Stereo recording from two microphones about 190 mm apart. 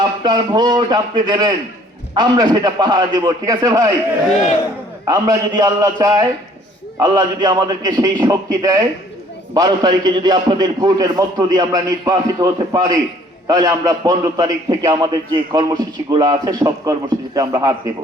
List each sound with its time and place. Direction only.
0.0 s a man's voice: 20° right (ahead or behind)
5.0 s a man's voice: 20° right (ahead or behind)